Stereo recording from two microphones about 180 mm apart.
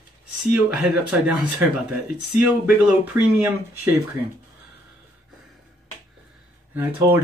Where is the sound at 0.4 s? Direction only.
5° right (ahead or behind).